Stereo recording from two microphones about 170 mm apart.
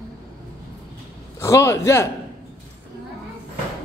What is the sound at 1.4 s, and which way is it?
Speech, 15° left (ahead or behind).